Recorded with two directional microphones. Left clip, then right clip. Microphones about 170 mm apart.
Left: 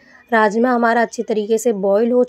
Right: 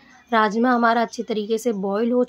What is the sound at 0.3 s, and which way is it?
A woman's voice, 20° left (ahead or behind).